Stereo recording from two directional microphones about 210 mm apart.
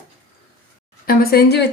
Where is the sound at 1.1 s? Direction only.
45° left (ahead or behind).